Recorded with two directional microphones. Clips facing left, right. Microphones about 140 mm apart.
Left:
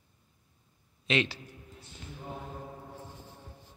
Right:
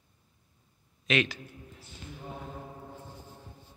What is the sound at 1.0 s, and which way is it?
Speech, 25° left (ahead or behind).